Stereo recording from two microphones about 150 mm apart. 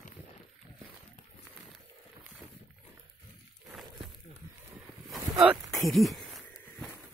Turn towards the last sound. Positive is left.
turn(degrees=0)  # may be behind; listen again after turning